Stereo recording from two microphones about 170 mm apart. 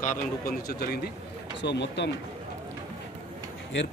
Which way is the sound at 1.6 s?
90° left.